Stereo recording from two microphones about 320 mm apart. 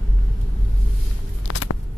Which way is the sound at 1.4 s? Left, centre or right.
Left.